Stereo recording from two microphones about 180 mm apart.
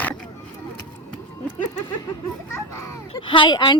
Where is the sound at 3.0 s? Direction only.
30° left (ahead or behind).